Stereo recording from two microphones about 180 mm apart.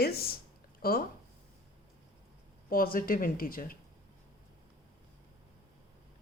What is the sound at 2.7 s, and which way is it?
Speech, 50° left (ahead or behind).